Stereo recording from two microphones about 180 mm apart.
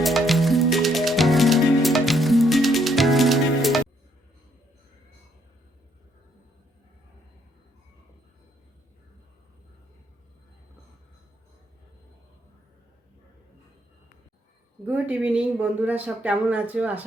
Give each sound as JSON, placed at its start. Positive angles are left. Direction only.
{"t": 0.0, "sound": "music", "side_deg": 0}
{"t": 14.8, "sound": "speech", "side_deg": -10}